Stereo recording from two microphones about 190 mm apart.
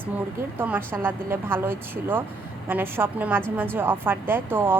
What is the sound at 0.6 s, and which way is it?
Speech, 10° right (ahead or behind).